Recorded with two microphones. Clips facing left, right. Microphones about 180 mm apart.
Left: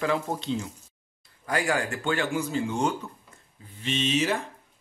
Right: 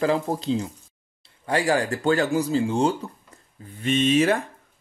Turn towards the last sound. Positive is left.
turn(degrees=-55)  # may be behind; listen again after turning